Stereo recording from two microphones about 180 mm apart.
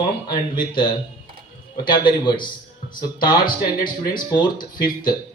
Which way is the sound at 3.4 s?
50° left (ahead or behind).